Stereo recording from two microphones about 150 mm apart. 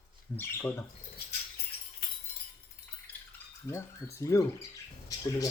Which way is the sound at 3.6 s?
20° left (ahead or behind).